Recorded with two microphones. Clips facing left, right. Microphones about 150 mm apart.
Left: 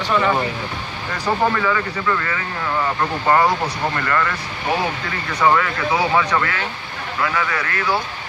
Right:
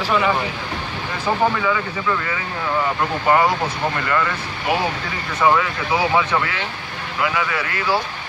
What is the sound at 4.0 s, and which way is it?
Speech, 15° right (ahead or behind).